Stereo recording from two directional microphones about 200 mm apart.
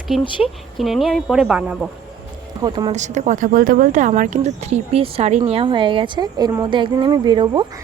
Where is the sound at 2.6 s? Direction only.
20° right (ahead or behind).